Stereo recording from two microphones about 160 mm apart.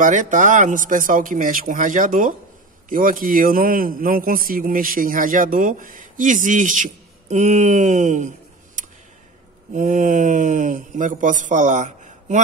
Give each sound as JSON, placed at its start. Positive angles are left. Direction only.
{"t": 0.0, "sound": "a man's voice", "side_deg": -55}
{"t": 9.7, "sound": "speech", "side_deg": -50}